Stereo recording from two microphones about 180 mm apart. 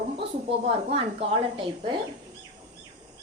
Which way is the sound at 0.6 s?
30° right (ahead or behind).